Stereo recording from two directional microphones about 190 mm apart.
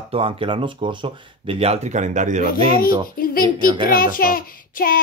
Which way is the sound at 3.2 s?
45° left (ahead or behind).